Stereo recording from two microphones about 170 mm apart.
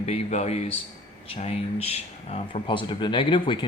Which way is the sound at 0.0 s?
40° left (ahead or behind).